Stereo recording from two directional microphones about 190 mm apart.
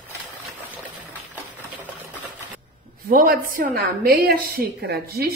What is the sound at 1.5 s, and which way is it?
Sewing machine, 10° right (ahead or behind).